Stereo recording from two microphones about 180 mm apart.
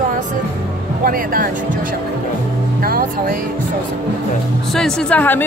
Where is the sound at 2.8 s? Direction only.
55° right (ahead or behind).